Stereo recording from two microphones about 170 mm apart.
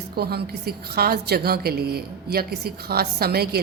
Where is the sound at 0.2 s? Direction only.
70° right (ahead or behind).